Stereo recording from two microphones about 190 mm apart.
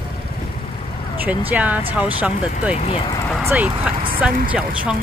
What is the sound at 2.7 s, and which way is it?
Speech, 30° left (ahead or behind).